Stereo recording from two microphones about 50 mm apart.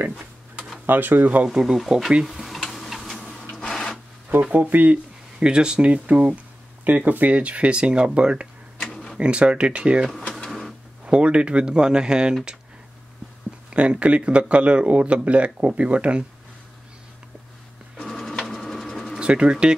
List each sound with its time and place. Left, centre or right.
0.8 s speech: right
1.5 s speech: centre
2.4 s tick-tock: centre
3.3 s printer: centre
4.6 s speech: right
5.4 s speech: centre
8.7 s tick-tock: centre
9.2 s speech: right
10.3 s printer: centre
11.1 s speech: right
13.7 s speech: right
18.0 s sewing machine: centre
19.1 s speech: right